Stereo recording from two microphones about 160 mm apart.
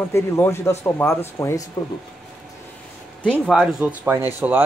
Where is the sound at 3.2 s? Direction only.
5° left (ahead or behind); by 4.6 s 10° right (ahead or behind).